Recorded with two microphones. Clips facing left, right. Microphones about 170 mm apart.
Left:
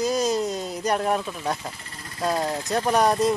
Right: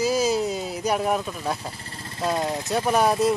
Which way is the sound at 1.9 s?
30° right (ahead or behind).